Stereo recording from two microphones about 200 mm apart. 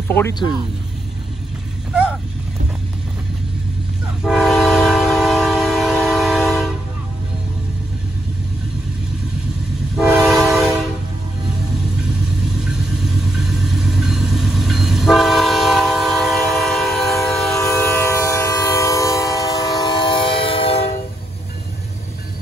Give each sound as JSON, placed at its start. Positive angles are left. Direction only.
{"t": 0.1, "sound": "speech", "side_deg": 15}
{"t": 4.2, "sound": "train", "side_deg": 0}
{"t": 10.2, "sound": "train", "side_deg": 0}
{"t": 12.5, "sound": "vehicle", "side_deg": -5}
{"t": 17.6, "sound": "train", "side_deg": 15}